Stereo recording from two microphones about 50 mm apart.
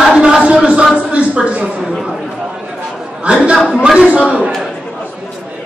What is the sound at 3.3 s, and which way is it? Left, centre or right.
A man's voice, right.